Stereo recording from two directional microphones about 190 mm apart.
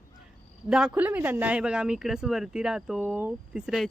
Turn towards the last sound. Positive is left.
turn(degrees=-5)  # may be behind; listen again after turning